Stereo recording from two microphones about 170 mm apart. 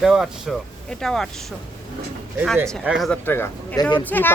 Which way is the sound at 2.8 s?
Centre (ahead or behind).